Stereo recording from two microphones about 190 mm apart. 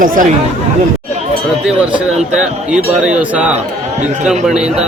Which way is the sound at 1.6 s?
5° right (ahead or behind).